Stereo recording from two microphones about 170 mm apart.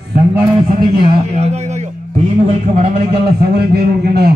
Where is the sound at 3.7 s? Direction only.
70° right (ahead or behind).